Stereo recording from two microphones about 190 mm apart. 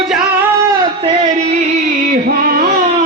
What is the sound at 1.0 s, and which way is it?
Speech, 30° right (ahead or behind).